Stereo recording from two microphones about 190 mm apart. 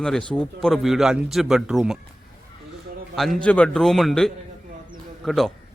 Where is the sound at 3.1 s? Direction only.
Centre (ahead or behind).